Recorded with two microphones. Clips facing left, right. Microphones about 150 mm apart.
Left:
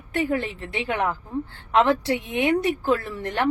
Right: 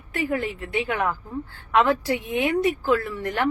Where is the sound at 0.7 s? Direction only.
25° left (ahead or behind).